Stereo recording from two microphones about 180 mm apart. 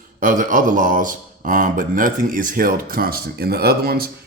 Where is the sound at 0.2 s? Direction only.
50° right (ahead or behind).